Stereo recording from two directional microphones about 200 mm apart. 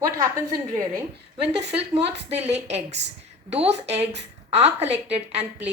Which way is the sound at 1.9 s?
30° right (ahead or behind).